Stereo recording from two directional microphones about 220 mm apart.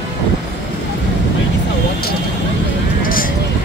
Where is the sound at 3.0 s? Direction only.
40° left (ahead or behind).